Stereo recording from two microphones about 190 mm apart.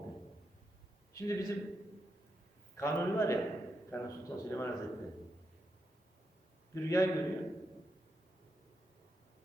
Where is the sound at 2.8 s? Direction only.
15° left (ahead or behind).